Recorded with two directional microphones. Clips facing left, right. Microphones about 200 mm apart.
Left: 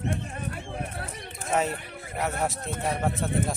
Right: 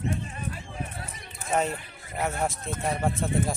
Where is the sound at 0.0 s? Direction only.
60° left (ahead or behind).